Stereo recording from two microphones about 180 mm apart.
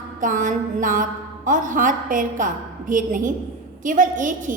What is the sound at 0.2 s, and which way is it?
A woman's voice, 45° right (ahead or behind).